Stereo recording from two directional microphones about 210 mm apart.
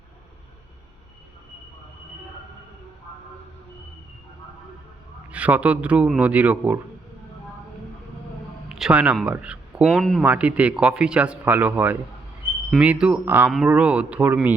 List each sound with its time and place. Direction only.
5.3 s speech: 5° right (ahead or behind)
8.7 s speech: 5° right (ahead or behind)